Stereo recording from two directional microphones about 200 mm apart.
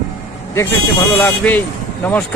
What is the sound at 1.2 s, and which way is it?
Speech, 10° left (ahead or behind).